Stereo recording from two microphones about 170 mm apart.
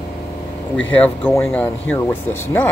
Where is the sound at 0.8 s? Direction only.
10° left (ahead or behind).